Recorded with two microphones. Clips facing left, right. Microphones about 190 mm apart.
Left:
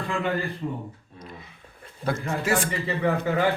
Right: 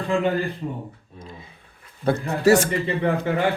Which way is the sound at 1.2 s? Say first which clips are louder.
Right 1 dB; 25° right (ahead or behind).